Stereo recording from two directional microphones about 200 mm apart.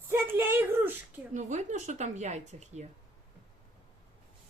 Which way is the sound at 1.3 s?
35° right (ahead or behind).